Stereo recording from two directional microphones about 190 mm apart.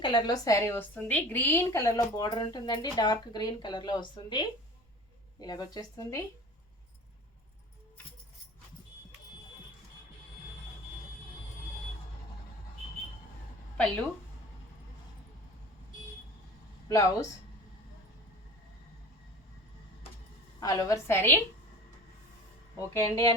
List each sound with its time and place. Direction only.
0.0 s a woman's voice: 20° left (ahead or behind)
13.7 s speech: 5° left (ahead or behind)
16.9 s a woman's voice: 20° left (ahead or behind)
20.6 s a woman's voice: 20° left (ahead or behind)
23.0 s a woman's voice: 15° left (ahead or behind)